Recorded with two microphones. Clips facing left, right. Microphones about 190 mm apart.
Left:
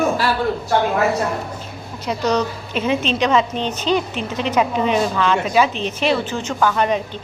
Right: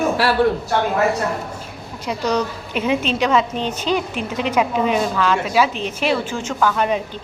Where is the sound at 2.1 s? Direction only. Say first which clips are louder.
Left 1 dB; 10° right (ahead or behind).